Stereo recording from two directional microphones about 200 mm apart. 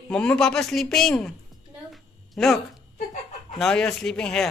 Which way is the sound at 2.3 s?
Centre (ahead or behind).